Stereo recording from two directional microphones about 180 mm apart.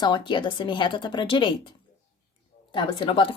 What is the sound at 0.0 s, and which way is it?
Speech, 25° left (ahead or behind).